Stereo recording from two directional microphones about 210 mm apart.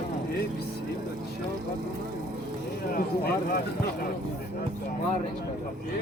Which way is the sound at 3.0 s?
45° left (ahead or behind).